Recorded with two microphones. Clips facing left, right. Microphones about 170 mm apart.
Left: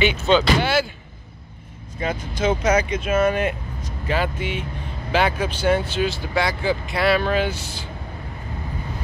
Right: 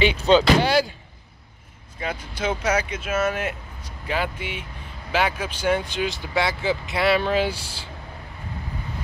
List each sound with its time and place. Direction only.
0.0 s speech: 35° right (ahead or behind)
2.0 s speech: 10° right (ahead or behind); by 7.9 s 30° right (ahead or behind)